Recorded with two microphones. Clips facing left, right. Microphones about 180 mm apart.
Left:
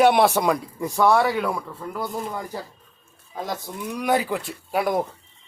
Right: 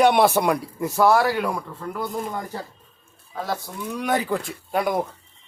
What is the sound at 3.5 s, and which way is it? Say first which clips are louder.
Speech: right 1 dB; 15° left (ahead or behind).